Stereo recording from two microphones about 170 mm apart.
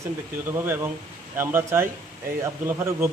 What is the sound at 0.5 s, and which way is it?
A man's voice, 15° right (ahead or behind).